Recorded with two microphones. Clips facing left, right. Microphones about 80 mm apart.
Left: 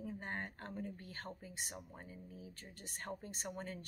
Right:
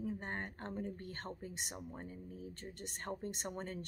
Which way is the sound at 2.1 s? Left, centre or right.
Right.